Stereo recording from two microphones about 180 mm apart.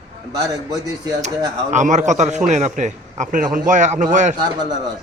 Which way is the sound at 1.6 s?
40° right (ahead or behind).